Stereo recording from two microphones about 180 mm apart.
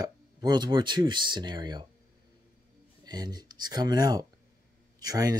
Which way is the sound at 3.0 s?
20° right (ahead or behind).